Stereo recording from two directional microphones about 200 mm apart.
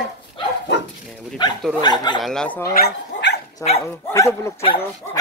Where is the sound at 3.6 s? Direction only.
15° left (ahead or behind).